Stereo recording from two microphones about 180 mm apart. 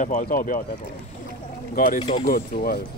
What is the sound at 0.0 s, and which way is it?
Speech, 45° left (ahead or behind).